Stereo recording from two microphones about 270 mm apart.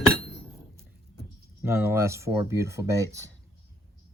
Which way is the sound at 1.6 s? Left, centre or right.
Centre.